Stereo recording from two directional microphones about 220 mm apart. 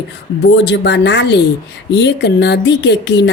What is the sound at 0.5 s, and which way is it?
A woman's voice, 50° left (ahead or behind).